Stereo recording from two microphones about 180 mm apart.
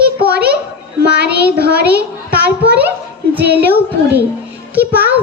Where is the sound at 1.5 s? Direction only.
65° right (ahead or behind).